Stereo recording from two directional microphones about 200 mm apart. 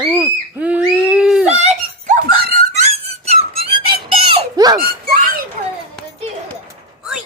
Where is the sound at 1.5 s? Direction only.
35° right (ahead or behind).